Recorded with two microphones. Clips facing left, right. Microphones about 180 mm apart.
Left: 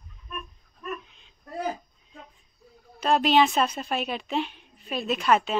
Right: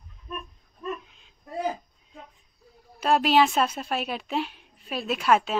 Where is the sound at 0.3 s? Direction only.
30° right (ahead or behind).